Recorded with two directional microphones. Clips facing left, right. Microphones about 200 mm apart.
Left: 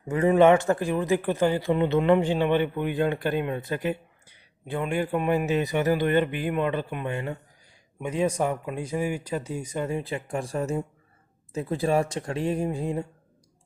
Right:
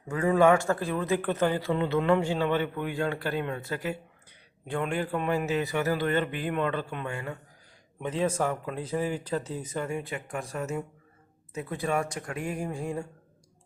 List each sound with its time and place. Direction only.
0.1 s a man's voice: 20° left (ahead or behind)
4.7 s a man's voice: 10° left (ahead or behind)